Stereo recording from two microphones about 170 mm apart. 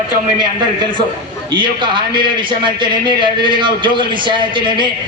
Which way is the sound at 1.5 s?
30° right (ahead or behind).